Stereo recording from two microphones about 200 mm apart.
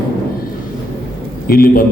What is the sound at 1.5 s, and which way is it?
Speech, 45° left (ahead or behind).